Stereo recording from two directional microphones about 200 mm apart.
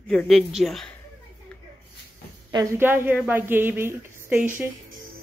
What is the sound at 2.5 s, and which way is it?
A woman's voice, 15° right (ahead or behind).